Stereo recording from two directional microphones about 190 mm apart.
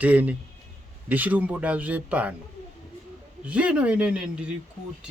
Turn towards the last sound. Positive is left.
turn(degrees=-5)  # may be behind; listen again after turning